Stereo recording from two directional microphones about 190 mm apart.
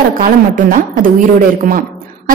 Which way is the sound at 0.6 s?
45° right (ahead or behind).